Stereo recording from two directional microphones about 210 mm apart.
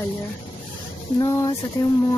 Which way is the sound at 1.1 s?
20° left (ahead or behind).